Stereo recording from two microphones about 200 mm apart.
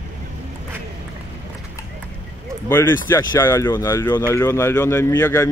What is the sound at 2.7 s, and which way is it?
Speech, 10° left (ahead or behind).